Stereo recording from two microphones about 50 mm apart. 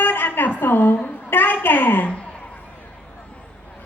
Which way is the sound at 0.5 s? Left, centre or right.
Left.